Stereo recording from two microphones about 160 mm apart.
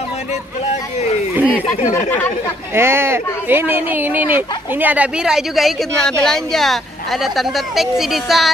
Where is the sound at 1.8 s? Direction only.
50° left (ahead or behind).